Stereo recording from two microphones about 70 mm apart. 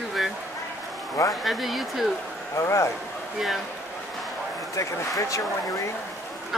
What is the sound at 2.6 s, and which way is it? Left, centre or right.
Speech, left.